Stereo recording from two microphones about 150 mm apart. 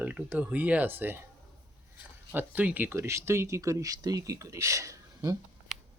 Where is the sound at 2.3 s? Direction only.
10° right (ahead or behind).